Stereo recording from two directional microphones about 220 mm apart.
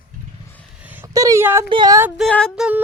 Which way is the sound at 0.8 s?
10° right (ahead or behind).